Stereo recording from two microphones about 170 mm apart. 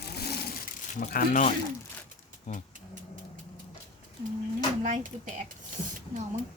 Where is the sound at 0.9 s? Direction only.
55° left (ahead or behind).